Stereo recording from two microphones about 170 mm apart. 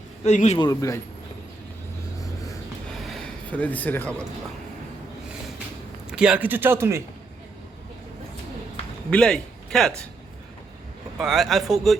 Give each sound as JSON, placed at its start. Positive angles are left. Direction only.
{"t": 0.3, "sound": "a man's voice", "side_deg": 40}
{"t": 0.6, "sound": "speech", "side_deg": 20}
{"t": 3.0, "sound": "a sound", "side_deg": 0}
{"t": 6.1, "sound": "a man's voice", "side_deg": -5}
{"t": 9.0, "sound": "a man's voice", "side_deg": 5}
{"t": 11.2, "sound": "speech", "side_deg": 0}